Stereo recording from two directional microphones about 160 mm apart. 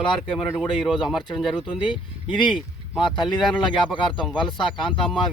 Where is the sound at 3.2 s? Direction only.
30° left (ahead or behind).